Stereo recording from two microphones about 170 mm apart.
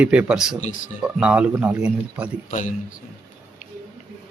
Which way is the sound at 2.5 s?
45° left (ahead or behind).